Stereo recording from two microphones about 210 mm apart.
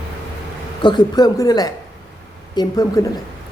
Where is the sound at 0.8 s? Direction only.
20° left (ahead or behind).